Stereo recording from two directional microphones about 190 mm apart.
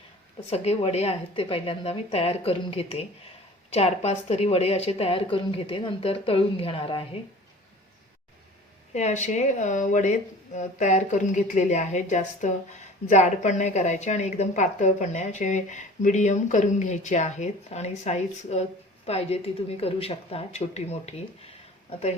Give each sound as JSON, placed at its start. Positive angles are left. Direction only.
{"t": 0.5, "sound": "a woman's voice", "side_deg": 35}
{"t": 8.9, "sound": "a woman's voice", "side_deg": 40}